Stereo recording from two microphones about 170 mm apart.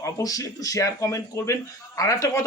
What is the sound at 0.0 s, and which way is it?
Speech, 20° left (ahead or behind).